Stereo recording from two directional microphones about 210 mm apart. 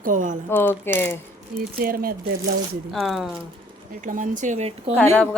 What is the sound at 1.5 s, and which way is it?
Speech, 45° right (ahead or behind).